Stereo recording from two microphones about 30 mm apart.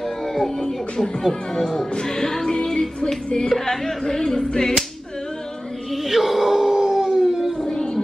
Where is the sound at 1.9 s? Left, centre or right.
Left.